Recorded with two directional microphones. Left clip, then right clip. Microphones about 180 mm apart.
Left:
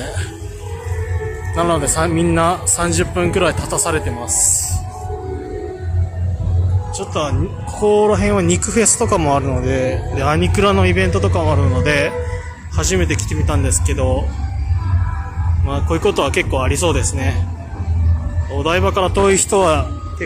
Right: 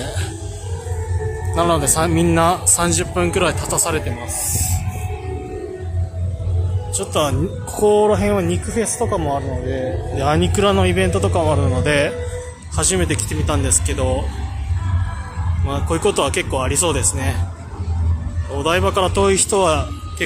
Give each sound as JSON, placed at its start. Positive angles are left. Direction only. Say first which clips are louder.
{"t": 1.5, "sound": "speech", "louder": "even", "side_deg": -5}
{"t": 4.2, "sound": "speech", "louder": "left 6 dB", "side_deg": 10}
{"t": 7.0, "sound": "a man's voice", "louder": "right 2 dB", "side_deg": -15}
{"t": 8.5, "sound": "speech", "louder": "left 6 dB", "side_deg": 15}
{"t": 10.1, "sound": "a man's voice", "louder": "right 1 dB", "side_deg": -5}
{"t": 15.6, "sound": "a man's voice", "louder": "left 1 dB", "side_deg": 0}
{"t": 18.5, "sound": "a man's voice", "louder": "left 1 dB", "side_deg": 0}